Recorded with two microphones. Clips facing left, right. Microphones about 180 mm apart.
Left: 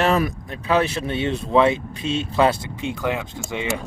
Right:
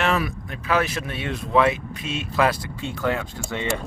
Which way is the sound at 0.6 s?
30° left (ahead or behind).